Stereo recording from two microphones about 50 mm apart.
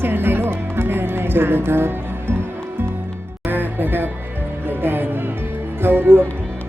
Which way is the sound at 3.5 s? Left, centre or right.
Right.